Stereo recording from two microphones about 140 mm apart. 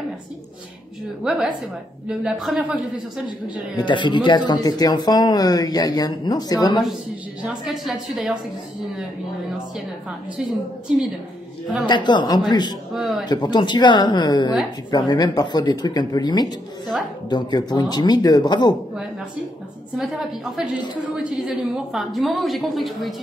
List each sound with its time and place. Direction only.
1.2 s a woman's voice: centre (ahead or behind)
3.7 s speech: 35° left (ahead or behind)
7.4 s a woman's voice: centre (ahead or behind)
11.8 s speech: 30° left (ahead or behind)
12.9 s a woman's voice: centre (ahead or behind)
13.3 s speech: 30° left (ahead or behind)
20.0 s a woman's voice: centre (ahead or behind)